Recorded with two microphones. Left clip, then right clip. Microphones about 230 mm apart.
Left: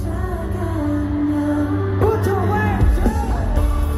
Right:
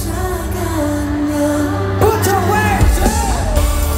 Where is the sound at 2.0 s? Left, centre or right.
Right.